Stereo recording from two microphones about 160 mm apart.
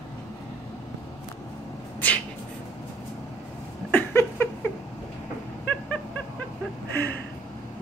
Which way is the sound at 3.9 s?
15° left (ahead or behind).